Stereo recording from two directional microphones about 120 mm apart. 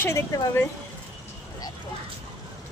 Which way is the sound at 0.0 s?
20° left (ahead or behind).